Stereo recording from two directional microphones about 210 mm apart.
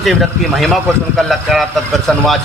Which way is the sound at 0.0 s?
Centre (ahead or behind).